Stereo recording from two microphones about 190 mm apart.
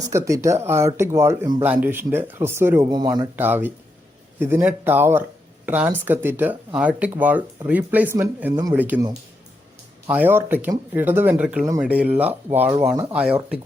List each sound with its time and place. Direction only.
0.1 s speech: 15° right (ahead or behind)
3.3 s speech: 10° right (ahead or behind)
10.1 s speech: 10° right (ahead or behind)